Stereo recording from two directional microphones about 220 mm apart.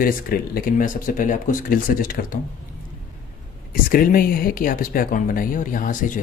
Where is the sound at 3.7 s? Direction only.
40° left (ahead or behind).